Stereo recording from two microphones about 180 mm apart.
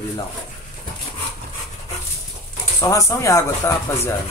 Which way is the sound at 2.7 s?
15° left (ahead or behind).